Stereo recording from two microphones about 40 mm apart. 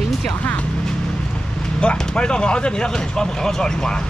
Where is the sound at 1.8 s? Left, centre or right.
Left.